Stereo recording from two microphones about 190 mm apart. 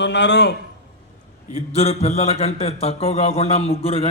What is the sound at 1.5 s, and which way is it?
A man's voice, 35° left (ahead or behind).